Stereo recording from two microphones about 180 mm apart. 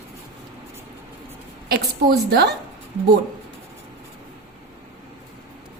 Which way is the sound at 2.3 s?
65° right (ahead or behind).